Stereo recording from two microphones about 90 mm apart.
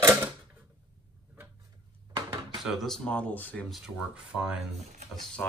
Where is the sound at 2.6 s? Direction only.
5° left (ahead or behind).